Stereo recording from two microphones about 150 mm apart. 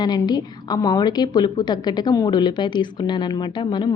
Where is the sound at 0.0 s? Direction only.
30° left (ahead or behind).